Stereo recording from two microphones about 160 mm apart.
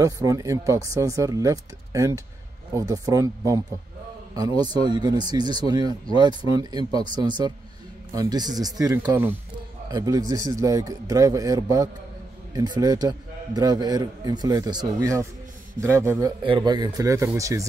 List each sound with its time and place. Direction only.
0.0 s a man's voice: 20° right (ahead or behind)